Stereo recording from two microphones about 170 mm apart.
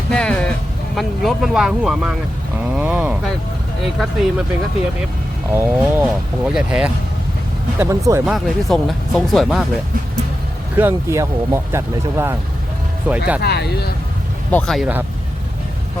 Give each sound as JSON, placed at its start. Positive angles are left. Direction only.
{"t": 0.1, "sound": "a sound", "side_deg": 5}
{"t": 0.9, "sound": "speech", "side_deg": 0}
{"t": 5.5, "sound": "speech", "side_deg": -10}
{"t": 7.8, "sound": "speech", "side_deg": -20}
{"t": 8.2, "sound": "speech", "side_deg": 0}
{"t": 10.8, "sound": "speech", "side_deg": -15}
{"t": 13.4, "sound": "speech", "side_deg": 70}
{"t": 14.5, "sound": "speech", "side_deg": 0}